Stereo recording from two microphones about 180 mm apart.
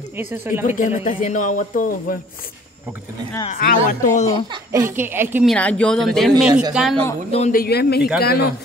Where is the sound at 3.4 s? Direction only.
50° left (ahead or behind).